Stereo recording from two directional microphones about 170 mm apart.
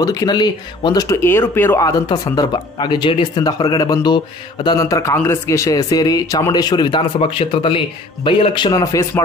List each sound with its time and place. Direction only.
0.0 s speech: 20° left (ahead or behind)